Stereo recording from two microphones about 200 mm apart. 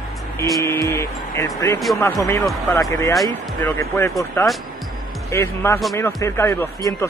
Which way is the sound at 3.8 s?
15° left (ahead or behind).